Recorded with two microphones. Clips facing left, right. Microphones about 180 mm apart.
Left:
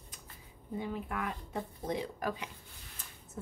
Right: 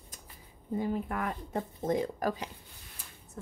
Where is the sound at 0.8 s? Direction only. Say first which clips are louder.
Right 4 dB; 45° right (ahead or behind).